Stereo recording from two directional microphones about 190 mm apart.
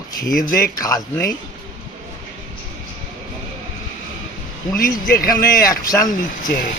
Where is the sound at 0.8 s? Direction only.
20° left (ahead or behind).